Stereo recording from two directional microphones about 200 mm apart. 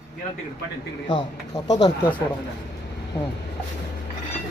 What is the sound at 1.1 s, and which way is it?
Speech, 20° left (ahead or behind).